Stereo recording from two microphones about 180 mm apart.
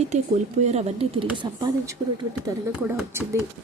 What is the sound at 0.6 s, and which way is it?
Speech, 40° right (ahead or behind).